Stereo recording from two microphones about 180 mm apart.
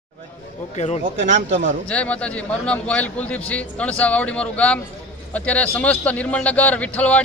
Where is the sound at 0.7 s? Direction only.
40° left (ahead or behind).